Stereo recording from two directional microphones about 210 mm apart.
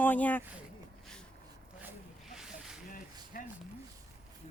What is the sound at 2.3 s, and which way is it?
Snake, 5° right (ahead or behind).